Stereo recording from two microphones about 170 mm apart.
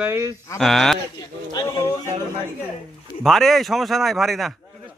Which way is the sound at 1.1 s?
25° left (ahead or behind).